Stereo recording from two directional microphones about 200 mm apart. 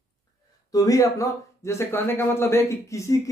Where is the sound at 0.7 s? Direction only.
20° left (ahead or behind).